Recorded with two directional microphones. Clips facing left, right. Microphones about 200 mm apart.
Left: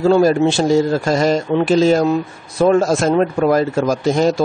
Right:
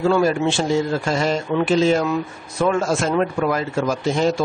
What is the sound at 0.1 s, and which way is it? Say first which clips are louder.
Speech: left 5 dB; 35° left (ahead or behind).